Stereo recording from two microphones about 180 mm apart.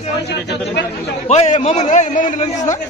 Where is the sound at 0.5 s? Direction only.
70° left (ahead or behind).